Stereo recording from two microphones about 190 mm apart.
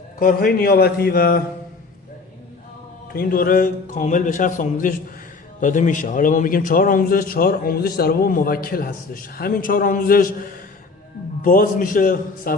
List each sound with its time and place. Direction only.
0.2 s a man's voice: 50° left (ahead or behind)
3.1 s a man's voice: 50° left (ahead or behind)